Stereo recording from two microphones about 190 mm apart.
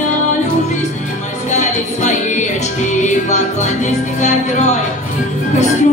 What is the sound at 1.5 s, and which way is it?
Music, 40° left (ahead or behind).